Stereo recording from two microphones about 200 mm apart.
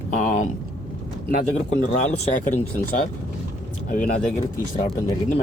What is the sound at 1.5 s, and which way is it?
Speech, 35° left (ahead or behind).